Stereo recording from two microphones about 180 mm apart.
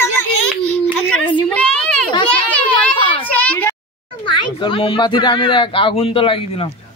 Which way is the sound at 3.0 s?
30° left (ahead or behind).